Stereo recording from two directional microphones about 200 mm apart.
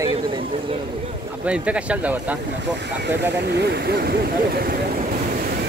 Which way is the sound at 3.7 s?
50° right (ahead or behind).